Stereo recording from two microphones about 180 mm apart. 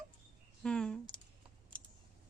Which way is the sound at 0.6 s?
5° left (ahead or behind).